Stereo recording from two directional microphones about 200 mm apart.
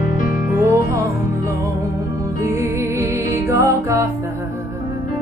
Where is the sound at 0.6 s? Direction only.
15° right (ahead or behind).